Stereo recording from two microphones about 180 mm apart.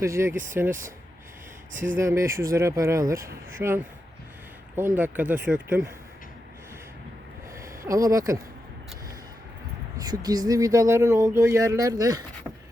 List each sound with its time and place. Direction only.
0.0 s speech: 15° right (ahead or behind)
2.0 s speech: 15° right (ahead or behind)
4.9 s speech: 10° right (ahead or behind)
7.6 s speech: 15° right (ahead or behind)
10.0 s speech: 20° right (ahead or behind)